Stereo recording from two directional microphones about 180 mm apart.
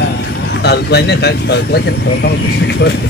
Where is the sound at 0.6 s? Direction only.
65° left (ahead or behind).